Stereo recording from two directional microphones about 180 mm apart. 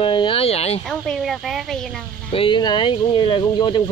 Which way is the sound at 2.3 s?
25° left (ahead or behind).